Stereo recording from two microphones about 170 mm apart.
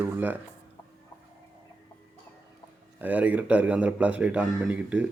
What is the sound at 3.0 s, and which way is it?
A man's voice, 10° right (ahead or behind).